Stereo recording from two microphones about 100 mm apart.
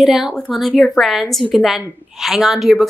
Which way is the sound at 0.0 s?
Centre (ahead or behind).